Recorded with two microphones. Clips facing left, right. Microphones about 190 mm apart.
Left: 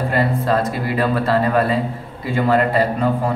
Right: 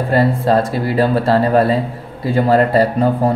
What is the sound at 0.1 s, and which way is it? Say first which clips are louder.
Speech: right 6 dB; 35° right (ahead or behind).